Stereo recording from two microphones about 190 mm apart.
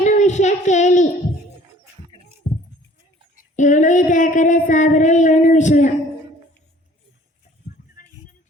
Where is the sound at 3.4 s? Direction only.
40° left (ahead or behind).